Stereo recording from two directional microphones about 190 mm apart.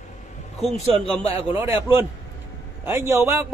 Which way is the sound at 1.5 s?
10° right (ahead or behind).